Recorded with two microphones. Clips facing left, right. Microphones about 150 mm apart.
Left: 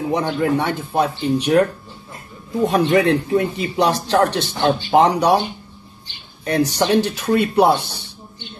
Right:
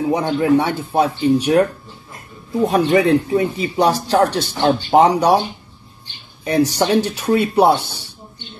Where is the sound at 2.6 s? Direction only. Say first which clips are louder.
Right 1 dB; 5° right (ahead or behind).